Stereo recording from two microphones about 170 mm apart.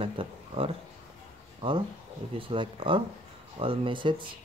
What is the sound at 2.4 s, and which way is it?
Speech, 30° right (ahead or behind).